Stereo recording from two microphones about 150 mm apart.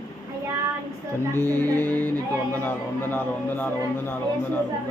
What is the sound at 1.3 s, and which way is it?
Speech, 15° left (ahead or behind).